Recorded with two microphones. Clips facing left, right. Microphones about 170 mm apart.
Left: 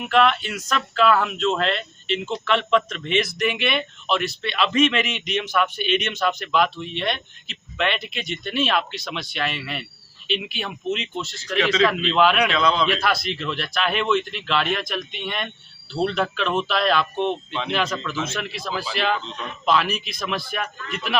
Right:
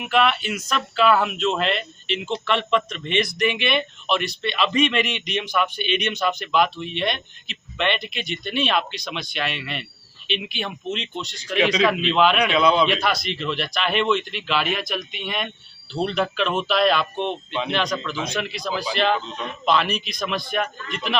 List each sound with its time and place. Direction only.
0.0 s speech: 5° right (ahead or behind)
12.5 s a man's voice: 10° right (ahead or behind)
12.9 s speech: centre (ahead or behind)